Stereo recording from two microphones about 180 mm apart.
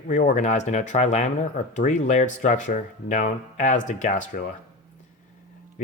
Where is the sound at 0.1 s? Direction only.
40° left (ahead or behind).